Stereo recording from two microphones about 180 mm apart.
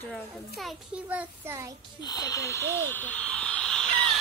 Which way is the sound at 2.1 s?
20° left (ahead or behind).